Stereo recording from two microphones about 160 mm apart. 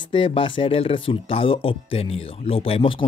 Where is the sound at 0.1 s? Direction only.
35° left (ahead or behind).